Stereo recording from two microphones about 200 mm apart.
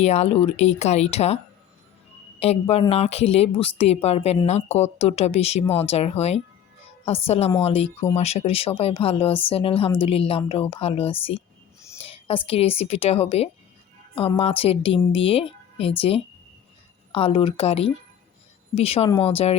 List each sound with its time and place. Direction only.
0.0 s speech: 35° left (ahead or behind)
2.4 s a woman's voice: 30° left (ahead or behind)